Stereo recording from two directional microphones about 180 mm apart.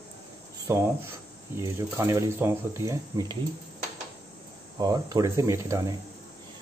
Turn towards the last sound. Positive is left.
turn(degrees=-15)  # may be behind; listen again after turning